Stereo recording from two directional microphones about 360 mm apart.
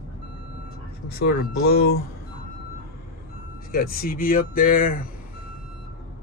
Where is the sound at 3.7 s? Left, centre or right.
Left.